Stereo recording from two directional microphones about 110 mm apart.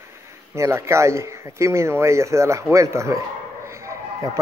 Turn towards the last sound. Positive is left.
turn(degrees=-25)  # may be behind; listen again after turning